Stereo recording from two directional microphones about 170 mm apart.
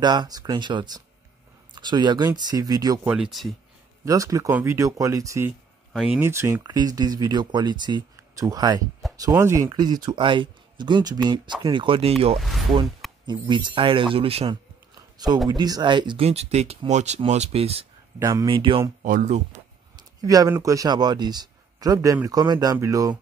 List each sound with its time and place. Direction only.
0.0 s speech: 25° right (ahead or behind)
3.1 s speech: 5° right (ahead or behind)
4.0 s speech: 20° right (ahead or behind)
5.9 s speech: 5° right (ahead or behind)
6.2 s speech: 15° right (ahead or behind)
13.3 s speech: 25° right (ahead or behind)
15.4 s speech: 25° right (ahead or behind)
18.2 s speech: 20° right (ahead or behind)
19.0 s speech: 45° right (ahead or behind)
20.0 s speech: 20° right (ahead or behind)